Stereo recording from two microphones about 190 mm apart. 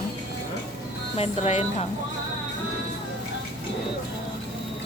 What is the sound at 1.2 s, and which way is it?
Speech, 30° left (ahead or behind).